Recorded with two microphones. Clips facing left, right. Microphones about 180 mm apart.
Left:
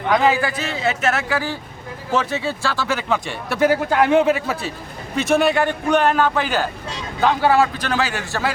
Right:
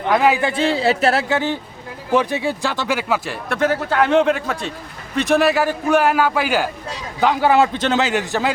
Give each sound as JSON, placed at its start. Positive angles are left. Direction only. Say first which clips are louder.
{"t": 0.1, "sound": "a man's voice", "louder": "right 1 dB", "side_deg": -10}
{"t": 0.3, "sound": "a man's voice", "louder": "right 5 dB", "side_deg": -25}
{"t": 2.1, "sound": "a man's voice", "louder": "right 3 dB", "side_deg": -15}
{"t": 3.5, "sound": "a man's voice", "louder": "left 2 dB", "side_deg": 10}